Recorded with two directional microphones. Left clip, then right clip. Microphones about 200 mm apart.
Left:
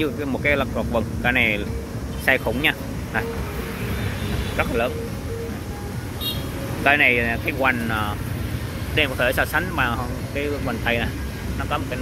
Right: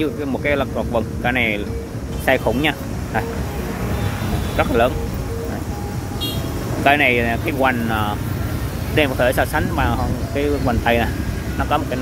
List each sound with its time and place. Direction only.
0.0 s speech: 10° right (ahead or behind)
4.6 s speech: 25° right (ahead or behind)
6.8 s speech: 10° right (ahead or behind)